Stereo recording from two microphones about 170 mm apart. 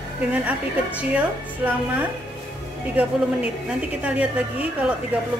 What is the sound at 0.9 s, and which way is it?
A woman's voice, 10° right (ahead or behind).